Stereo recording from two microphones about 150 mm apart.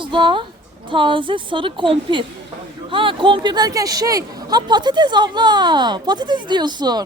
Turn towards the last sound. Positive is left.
turn(degrees=-30)  # may be behind; listen again after turning